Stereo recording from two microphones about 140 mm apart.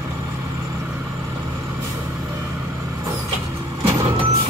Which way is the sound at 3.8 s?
20° right (ahead or behind).